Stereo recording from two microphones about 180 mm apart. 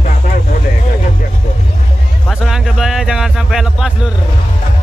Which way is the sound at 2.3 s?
5° right (ahead or behind).